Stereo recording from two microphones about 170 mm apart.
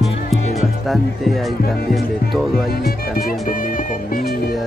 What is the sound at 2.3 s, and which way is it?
Speech, centre (ahead or behind).